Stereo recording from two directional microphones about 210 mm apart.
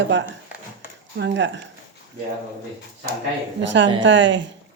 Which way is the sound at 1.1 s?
55° right (ahead or behind).